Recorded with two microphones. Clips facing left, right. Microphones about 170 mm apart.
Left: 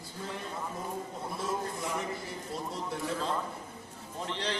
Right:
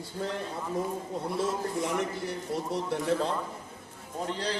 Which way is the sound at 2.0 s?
70° right (ahead or behind).